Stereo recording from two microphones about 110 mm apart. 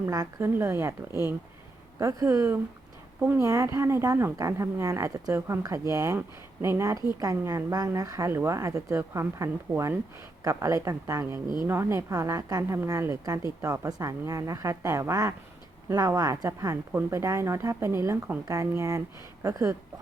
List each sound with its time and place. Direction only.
0.0 s a woman's voice: 30° right (ahead or behind)